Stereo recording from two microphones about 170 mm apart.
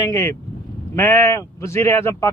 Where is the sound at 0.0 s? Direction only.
20° left (ahead or behind).